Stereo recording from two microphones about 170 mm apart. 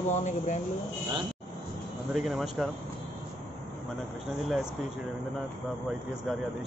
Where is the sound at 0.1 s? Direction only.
45° left (ahead or behind).